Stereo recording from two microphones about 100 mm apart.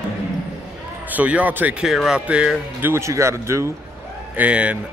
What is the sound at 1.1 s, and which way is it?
Speech, 15° right (ahead or behind).